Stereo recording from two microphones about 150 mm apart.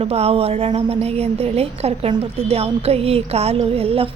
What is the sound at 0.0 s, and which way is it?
A woman's voice, 45° right (ahead or behind).